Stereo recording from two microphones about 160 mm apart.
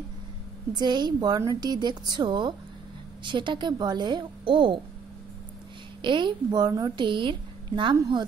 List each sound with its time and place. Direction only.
0.7 s a woman's voice: 25° right (ahead or behind)
6.0 s a woman's voice: 30° right (ahead or behind)